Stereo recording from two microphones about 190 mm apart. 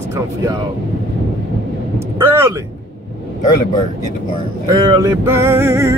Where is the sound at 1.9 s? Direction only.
10° right (ahead or behind).